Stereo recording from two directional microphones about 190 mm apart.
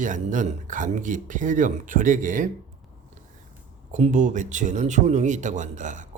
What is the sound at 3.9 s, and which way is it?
Speech, 40° right (ahead or behind).